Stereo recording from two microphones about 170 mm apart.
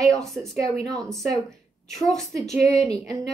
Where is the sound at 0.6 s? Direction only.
20° right (ahead or behind).